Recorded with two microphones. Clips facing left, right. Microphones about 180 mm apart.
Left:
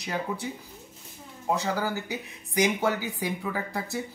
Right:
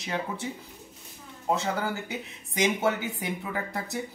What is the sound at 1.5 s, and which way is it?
Speech, 25° right (ahead or behind).